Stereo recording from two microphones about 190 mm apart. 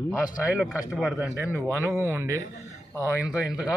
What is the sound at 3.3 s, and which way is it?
Speech, 5° right (ahead or behind).